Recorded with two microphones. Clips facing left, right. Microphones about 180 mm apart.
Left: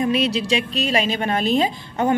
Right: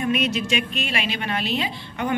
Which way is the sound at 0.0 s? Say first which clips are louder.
Left 3 dB; 30° left (ahead or behind).